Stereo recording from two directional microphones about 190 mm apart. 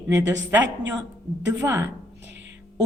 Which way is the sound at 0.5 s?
15° right (ahead or behind).